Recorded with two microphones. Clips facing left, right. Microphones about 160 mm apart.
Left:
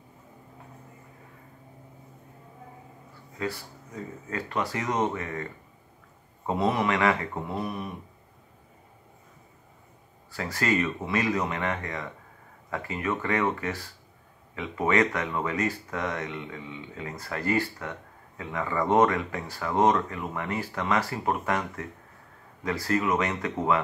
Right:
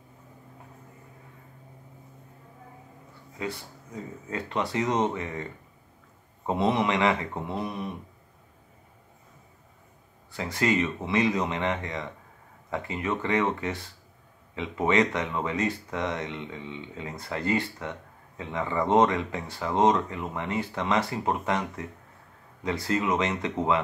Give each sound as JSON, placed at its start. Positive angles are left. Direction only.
{"t": 3.3, "sound": "speech", "side_deg": -20}
{"t": 10.3, "sound": "speech", "side_deg": -20}